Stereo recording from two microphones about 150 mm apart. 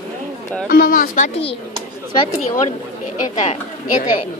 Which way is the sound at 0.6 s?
70° left (ahead or behind).